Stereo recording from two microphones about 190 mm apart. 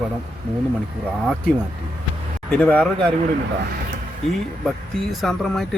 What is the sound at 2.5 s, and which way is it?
Speech, 5° left (ahead or behind).